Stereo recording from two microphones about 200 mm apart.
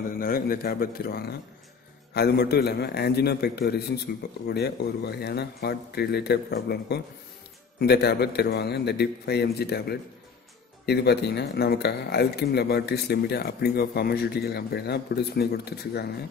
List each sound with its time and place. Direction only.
0.2 s a man's voice: 45° left (ahead or behind)